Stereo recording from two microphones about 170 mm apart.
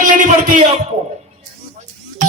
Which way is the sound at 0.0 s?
50° right (ahead or behind).